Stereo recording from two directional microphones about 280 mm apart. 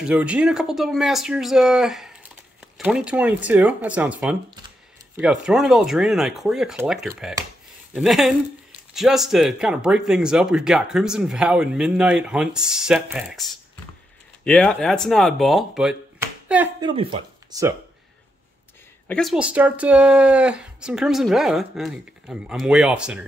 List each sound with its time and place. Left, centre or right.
0.0 s speech: centre
16.9 s speech: centre
19.0 s speech: centre